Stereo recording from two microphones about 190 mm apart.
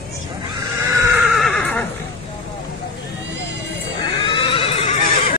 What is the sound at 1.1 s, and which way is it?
Neigh, centre (ahead or behind).